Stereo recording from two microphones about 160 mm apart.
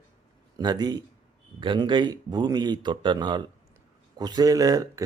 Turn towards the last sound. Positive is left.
turn(degrees=-20)  # may be behind; listen again after turning